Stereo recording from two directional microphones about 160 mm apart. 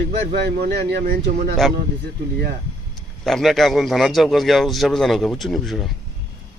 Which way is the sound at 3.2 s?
Centre (ahead or behind).